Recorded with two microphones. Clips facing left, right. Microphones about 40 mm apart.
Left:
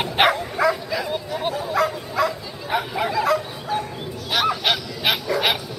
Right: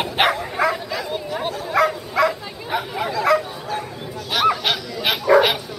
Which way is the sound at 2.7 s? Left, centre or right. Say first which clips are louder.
Left 1 dB; centre.